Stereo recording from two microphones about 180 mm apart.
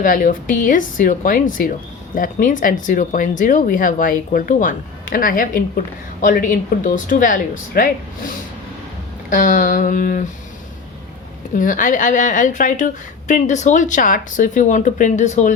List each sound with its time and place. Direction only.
0.0 s a woman's voice: 50° left (ahead or behind)
9.3 s a woman's voice: 50° left (ahead or behind)
11.5 s a woman's voice: 45° left (ahead or behind)